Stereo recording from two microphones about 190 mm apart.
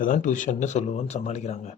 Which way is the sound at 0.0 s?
45° left (ahead or behind).